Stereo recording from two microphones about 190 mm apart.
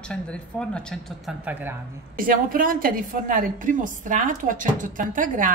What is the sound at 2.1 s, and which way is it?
A woman's voice, 45° right (ahead or behind).